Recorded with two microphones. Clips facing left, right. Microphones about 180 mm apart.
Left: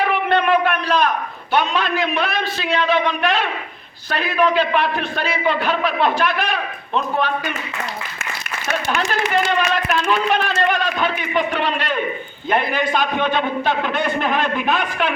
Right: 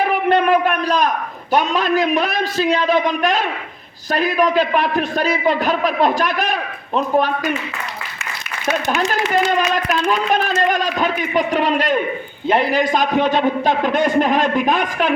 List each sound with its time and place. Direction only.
0.0 s a sound: 40° right (ahead or behind)
1.5 s a man's voice: 40° right (ahead or behind)
9.5 s a man's voice: 40° right (ahead or behind)